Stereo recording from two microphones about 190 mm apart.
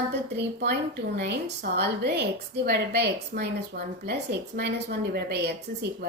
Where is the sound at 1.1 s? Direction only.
60° right (ahead or behind).